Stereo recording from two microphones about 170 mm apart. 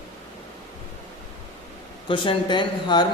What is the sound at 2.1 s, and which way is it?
Speech, 30° left (ahead or behind).